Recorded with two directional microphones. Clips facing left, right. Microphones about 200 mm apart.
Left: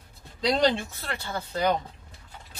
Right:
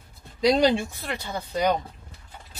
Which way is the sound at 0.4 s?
10° right (ahead or behind).